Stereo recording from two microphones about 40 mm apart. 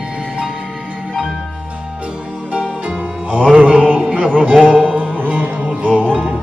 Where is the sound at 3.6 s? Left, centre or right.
Right.